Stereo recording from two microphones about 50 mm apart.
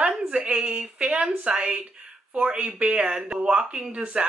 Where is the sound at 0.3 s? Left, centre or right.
Right.